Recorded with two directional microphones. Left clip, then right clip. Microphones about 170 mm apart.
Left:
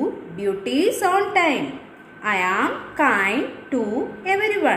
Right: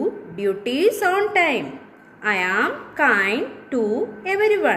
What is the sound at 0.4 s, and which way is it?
A woman's voice, 60° right (ahead or behind).